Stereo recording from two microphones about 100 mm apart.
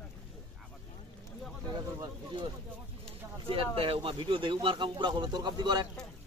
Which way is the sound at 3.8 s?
65° right (ahead or behind).